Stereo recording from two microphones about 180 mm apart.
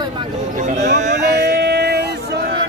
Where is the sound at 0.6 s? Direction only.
40° right (ahead or behind).